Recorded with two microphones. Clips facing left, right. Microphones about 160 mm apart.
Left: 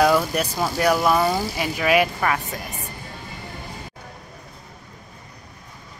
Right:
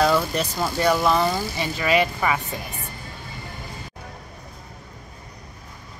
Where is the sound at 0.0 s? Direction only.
10° left (ahead or behind).